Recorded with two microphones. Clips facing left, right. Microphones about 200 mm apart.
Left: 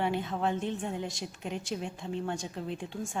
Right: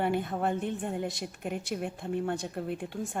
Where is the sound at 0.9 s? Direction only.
55° right (ahead or behind).